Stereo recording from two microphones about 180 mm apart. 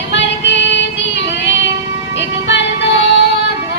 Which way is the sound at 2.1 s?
80° left.